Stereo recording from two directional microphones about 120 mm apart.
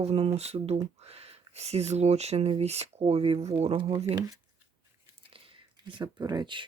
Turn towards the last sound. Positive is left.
turn(degrees=-40)  # may be behind; listen again after turning